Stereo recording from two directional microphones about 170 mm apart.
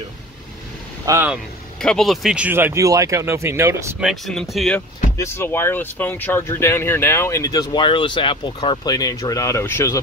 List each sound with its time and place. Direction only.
1.0 s speech: 15° right (ahead or behind)
1.3 s speech: 5° left (ahead or behind); by 3.9 s 15° right (ahead or behind)
4.0 s speech: centre (ahead or behind)
5.1 s speech: 15° left (ahead or behind)